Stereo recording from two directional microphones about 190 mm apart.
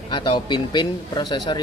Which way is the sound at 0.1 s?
25° left (ahead or behind).